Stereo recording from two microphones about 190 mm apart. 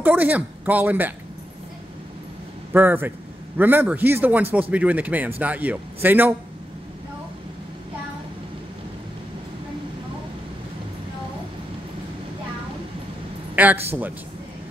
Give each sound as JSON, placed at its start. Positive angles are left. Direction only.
{"t": 0.0, "sound": "speech", "side_deg": -10}
{"t": 2.7, "sound": "speech", "side_deg": -10}
{"t": 13.6, "sound": "a man's voice", "side_deg": -10}